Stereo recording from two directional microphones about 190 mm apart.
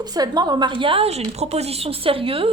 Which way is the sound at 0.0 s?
20° right (ahead or behind).